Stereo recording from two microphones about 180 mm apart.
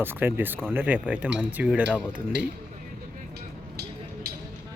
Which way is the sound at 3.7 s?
60° right (ahead or behind).